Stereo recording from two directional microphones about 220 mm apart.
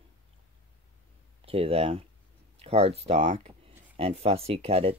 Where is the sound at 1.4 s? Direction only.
25° right (ahead or behind).